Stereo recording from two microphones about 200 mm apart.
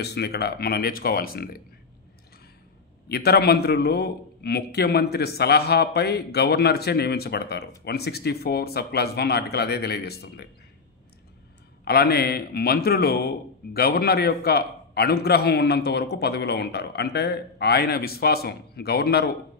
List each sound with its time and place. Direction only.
0.0 s a man's voice: 55° left (ahead or behind)
3.1 s a man's voice: 50° left (ahead or behind)
11.8 s a man's voice: 50° left (ahead or behind)